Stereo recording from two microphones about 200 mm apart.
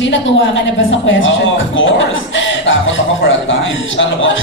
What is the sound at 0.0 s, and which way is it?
A woman's voice, 70° left (ahead or behind).